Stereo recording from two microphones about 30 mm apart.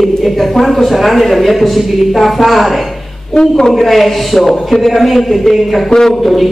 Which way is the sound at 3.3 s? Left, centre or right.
Centre.